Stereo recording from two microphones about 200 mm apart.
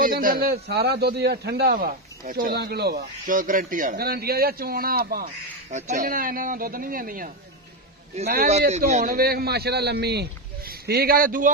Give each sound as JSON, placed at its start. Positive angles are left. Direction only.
{"t": 0.0, "sound": "a man's voice", "side_deg": -45}
{"t": 8.6, "sound": "a man's voice", "side_deg": -35}